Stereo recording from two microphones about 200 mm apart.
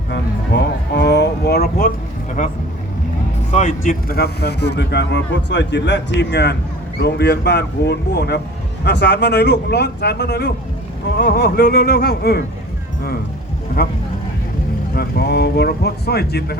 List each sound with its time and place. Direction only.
0.1 s music: 55° left (ahead or behind)
2.4 s a man's voice: 40° left (ahead or behind)
13.8 s a man's voice: 50° left (ahead or behind)
14.9 s a man's voice: 55° left (ahead or behind)